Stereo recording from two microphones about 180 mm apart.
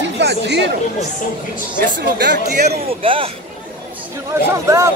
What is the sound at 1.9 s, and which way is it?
Speech, 65° right (ahead or behind).